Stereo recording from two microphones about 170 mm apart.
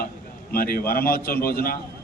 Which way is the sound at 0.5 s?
60° left (ahead or behind).